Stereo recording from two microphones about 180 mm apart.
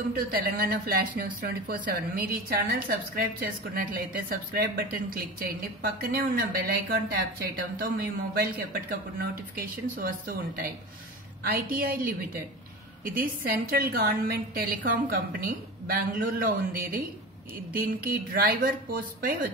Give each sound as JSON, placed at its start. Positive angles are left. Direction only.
{"t": 0.1, "sound": "a woman's voice", "side_deg": -55}